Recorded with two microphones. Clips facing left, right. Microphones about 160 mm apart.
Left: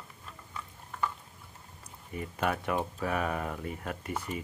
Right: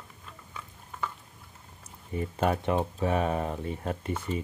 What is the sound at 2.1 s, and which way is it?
Speech, 30° right (ahead or behind).